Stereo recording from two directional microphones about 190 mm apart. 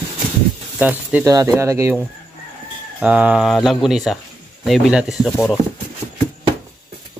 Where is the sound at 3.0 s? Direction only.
5° right (ahead or behind).